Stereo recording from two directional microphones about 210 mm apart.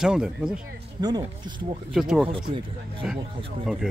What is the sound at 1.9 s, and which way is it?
Speech, centre (ahead or behind).